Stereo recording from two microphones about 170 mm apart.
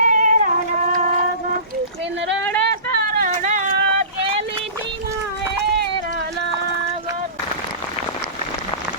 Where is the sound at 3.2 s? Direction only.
50° right (ahead or behind).